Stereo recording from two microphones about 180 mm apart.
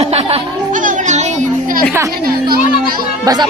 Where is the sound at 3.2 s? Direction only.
20° right (ahead or behind).